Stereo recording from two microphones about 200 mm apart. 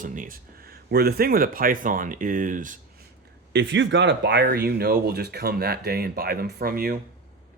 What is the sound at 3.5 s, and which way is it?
Speech, 65° right (ahead or behind).